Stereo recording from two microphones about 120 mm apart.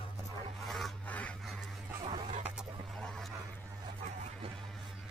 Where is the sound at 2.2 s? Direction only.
75° right (ahead or behind).